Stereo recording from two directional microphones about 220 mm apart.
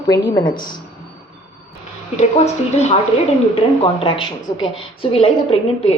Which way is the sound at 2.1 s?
30° left (ahead or behind).